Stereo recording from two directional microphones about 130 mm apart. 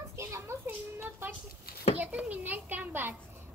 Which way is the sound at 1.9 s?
10° right (ahead or behind).